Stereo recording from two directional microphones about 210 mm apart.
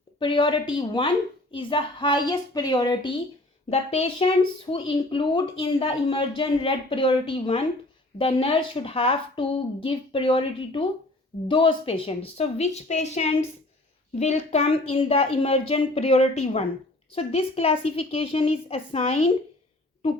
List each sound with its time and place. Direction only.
0.2 s a woman's voice: 25° left (ahead or behind)